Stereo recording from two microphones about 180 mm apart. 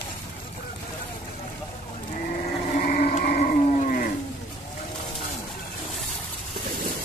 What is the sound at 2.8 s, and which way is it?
Sheep, 50° left (ahead or behind).